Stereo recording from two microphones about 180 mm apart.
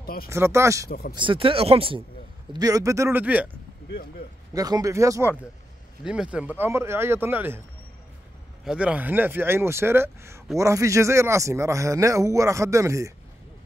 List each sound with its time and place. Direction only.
0.0 s speech: 55° left (ahead or behind)
0.3 s speech: 15° right (ahead or behind)
0.8 s speech: 60° left (ahead or behind)
1.1 s speech: 30° right (ahead or behind)
2.5 s speech: 20° right (ahead or behind)
4.6 s speech: 20° right (ahead or behind)
6.0 s speech: 5° right (ahead or behind)
8.6 s speech: 5° right (ahead or behind)